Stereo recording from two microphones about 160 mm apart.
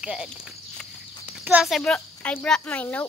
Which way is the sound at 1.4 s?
5° right (ahead or behind).